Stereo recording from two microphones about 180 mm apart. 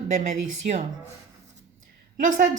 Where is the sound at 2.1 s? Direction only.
45° right (ahead or behind).